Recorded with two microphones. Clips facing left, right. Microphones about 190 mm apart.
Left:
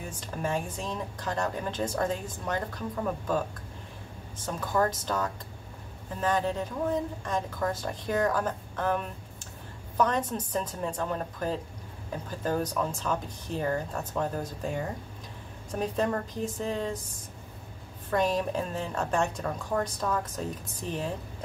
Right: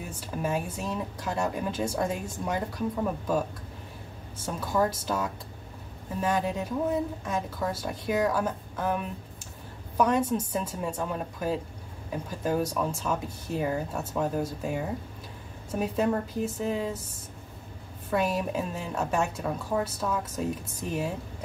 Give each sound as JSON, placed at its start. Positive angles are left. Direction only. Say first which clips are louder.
{"t": 0.2, "sound": "a woman's voice", "louder": "right 1 dB", "side_deg": -5}
{"t": 4.5, "sound": "a woman's voice", "louder": "right 1 dB", "side_deg": -10}
{"t": 18.1, "sound": "a woman's voice", "louder": "even", "side_deg": -5}